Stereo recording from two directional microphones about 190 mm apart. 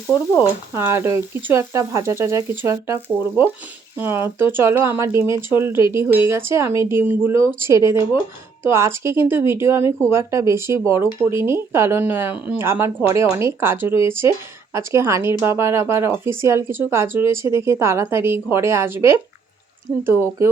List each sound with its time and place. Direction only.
0.1 s speech: 10° right (ahead or behind)